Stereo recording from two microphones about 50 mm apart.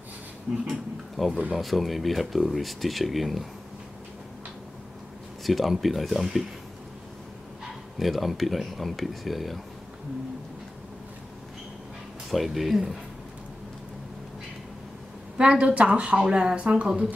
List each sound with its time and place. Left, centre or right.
0.7 s speech: centre
5.4 s speech: centre
8.0 s speech: centre
12.3 s speech: centre
15.3 s speech: right